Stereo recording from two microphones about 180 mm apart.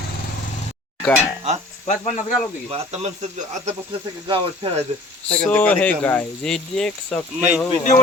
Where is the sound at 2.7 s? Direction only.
35° right (ahead or behind).